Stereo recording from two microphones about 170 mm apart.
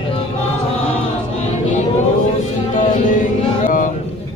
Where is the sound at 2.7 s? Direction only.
50° left (ahead or behind).